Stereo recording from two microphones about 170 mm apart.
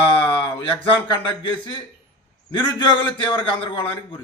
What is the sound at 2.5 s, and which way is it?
A man's voice, 30° left (ahead or behind).